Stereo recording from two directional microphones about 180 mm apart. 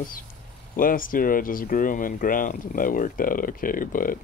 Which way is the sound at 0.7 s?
50° left (ahead or behind).